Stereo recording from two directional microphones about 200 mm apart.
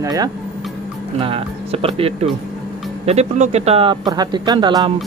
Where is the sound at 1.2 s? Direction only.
30° right (ahead or behind).